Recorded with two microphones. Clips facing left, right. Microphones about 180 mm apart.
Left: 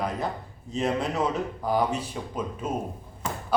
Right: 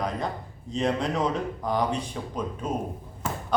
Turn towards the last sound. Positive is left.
turn(degrees=-5)  # may be behind; listen again after turning